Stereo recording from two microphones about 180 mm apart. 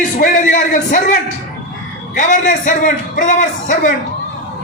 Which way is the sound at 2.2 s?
45° left (ahead or behind).